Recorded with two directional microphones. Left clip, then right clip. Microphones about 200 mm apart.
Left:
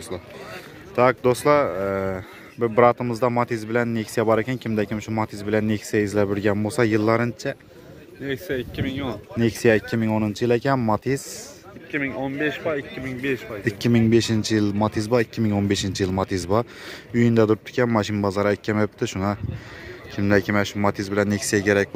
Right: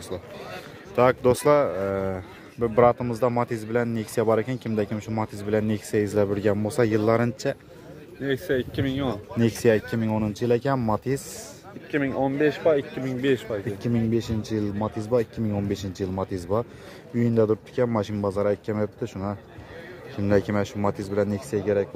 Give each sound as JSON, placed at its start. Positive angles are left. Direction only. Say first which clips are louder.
{"t": 0.9, "sound": "a man's voice", "louder": "left 1 dB", "side_deg": 5}
{"t": 8.2, "sound": "speech", "louder": "right 2 dB", "side_deg": -40}
{"t": 9.4, "sound": "a man's voice", "louder": "left 2 dB", "side_deg": 5}
{"t": 11.9, "sound": "speech", "louder": "right 2 dB", "side_deg": -30}
{"t": 13.7, "sound": "a man's voice", "louder": "left 10 dB", "side_deg": 15}
{"t": 20.2, "sound": "a man's voice", "louder": "left 3 dB", "side_deg": 5}